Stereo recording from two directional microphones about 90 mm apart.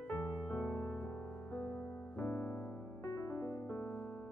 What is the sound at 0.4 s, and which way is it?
Music, 10° left (ahead or behind).